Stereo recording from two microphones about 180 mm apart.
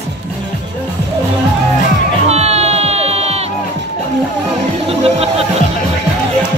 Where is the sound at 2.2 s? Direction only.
35° right (ahead or behind).